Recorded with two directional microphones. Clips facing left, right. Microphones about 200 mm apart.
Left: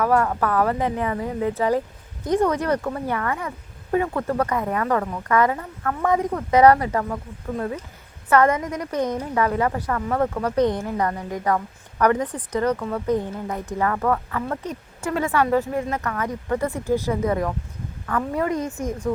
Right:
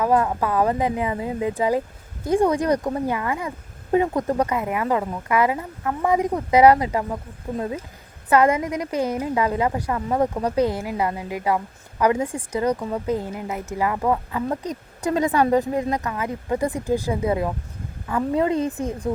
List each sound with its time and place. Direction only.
0.0 s a woman's voice: 15° right (ahead or behind); by 19.1 s 30° right (ahead or behind)